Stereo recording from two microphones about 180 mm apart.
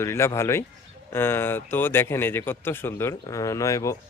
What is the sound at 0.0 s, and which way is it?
A man's voice, 15° left (ahead or behind).